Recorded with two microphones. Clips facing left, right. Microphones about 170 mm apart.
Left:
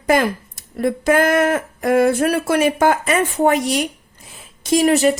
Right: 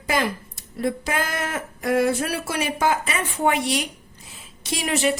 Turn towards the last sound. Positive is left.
turn(degrees=40)  # may be behind; listen again after turning